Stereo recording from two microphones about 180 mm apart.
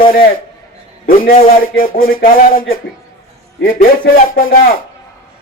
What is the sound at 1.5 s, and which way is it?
Speech, 55° left (ahead or behind).